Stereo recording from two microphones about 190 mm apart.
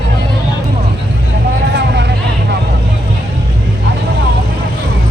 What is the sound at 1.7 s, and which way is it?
Vehicle, 65° right (ahead or behind).